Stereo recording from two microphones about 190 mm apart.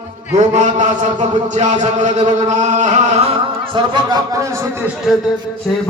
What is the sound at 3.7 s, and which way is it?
Speech, 20° right (ahead or behind).